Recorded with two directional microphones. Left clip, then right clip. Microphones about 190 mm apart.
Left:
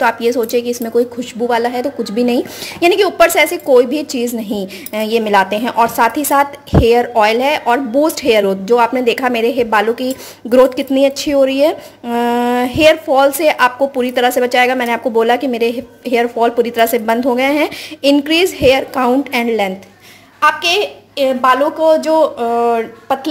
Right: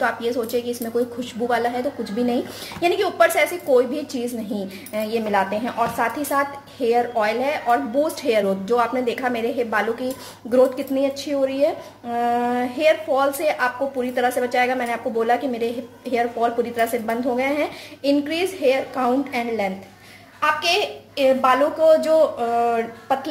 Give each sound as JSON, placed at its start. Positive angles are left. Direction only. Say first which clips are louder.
{"t": 0.0, "sound": "a woman's voice", "louder": "left 9 dB", "side_deg": 40}